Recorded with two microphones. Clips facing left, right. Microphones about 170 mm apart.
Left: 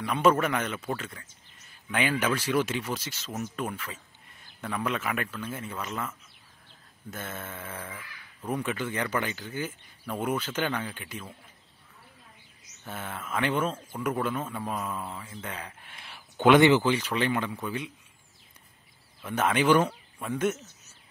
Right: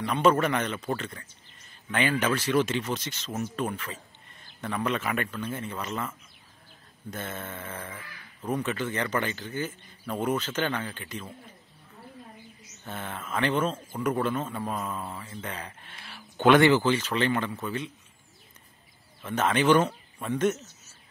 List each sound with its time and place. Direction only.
0.0 s speech: 5° left (ahead or behind)
12.8 s speech: 5° left (ahead or behind)
15.9 s a sound: 15° left (ahead or behind)
16.4 s speech: 15° left (ahead or behind)
19.2 s speech: 10° left (ahead or behind)